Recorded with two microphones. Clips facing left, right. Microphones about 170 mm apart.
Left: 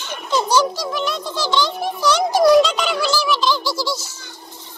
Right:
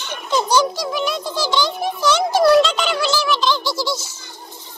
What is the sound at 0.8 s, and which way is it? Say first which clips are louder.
A child's voice: right 1 dB; 5° right (ahead or behind).